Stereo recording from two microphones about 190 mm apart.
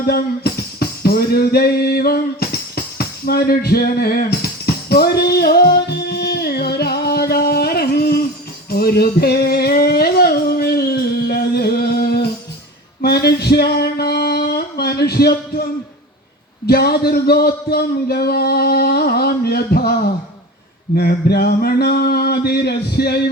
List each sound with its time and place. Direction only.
0.0 s music: 55° left (ahead or behind)
8.7 s singing: 55° left (ahead or behind)
13.0 s male singing: 55° left (ahead or behind)
16.6 s speech: 55° left (ahead or behind)
20.9 s a sound: 55° left (ahead or behind)